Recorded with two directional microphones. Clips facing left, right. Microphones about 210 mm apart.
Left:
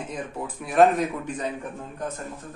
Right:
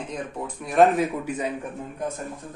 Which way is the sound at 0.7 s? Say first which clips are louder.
Right 1 dB; 5° right (ahead or behind).